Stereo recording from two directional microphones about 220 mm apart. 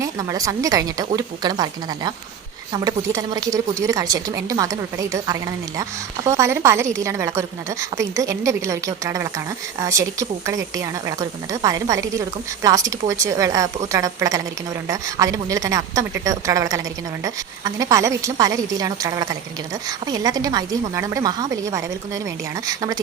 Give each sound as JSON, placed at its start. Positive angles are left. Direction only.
{"t": 0.0, "sound": "a woman's voice", "side_deg": -15}